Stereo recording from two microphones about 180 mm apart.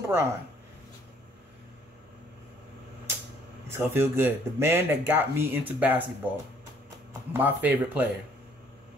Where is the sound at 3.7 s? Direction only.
15° right (ahead or behind).